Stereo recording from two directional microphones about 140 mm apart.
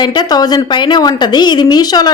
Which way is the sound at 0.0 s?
30° left (ahead or behind).